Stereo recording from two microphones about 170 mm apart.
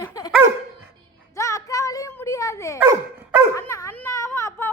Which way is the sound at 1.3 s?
15° left (ahead or behind).